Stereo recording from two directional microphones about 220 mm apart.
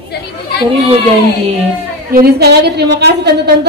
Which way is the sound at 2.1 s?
45° right (ahead or behind).